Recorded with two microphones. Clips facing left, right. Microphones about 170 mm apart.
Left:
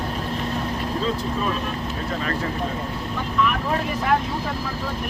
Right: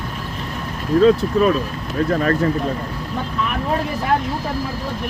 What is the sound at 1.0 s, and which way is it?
Speech, 70° right (ahead or behind).